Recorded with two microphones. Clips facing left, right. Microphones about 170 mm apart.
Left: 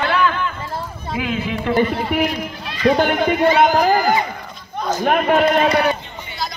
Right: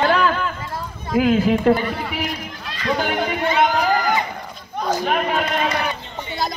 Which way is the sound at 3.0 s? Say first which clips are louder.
Left 5 dB; 55° left (ahead or behind).